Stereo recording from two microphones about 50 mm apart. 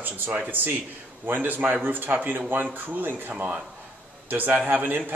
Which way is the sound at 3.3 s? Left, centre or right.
Right.